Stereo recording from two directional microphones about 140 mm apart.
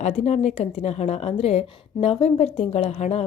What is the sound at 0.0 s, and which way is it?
Speech, 50° left (ahead or behind).